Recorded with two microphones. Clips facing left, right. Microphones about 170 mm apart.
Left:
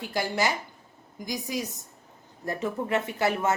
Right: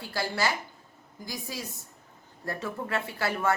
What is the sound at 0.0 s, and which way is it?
A woman's voice, 20° left (ahead or behind).